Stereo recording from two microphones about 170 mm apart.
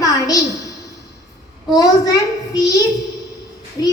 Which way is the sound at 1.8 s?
20° left (ahead or behind).